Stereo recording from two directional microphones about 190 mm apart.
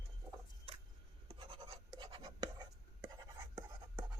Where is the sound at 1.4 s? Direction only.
25° right (ahead or behind).